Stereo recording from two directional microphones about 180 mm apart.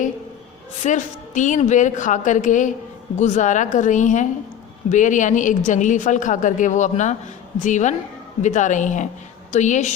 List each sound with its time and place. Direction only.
0.9 s a woman's voice: 45° left (ahead or behind)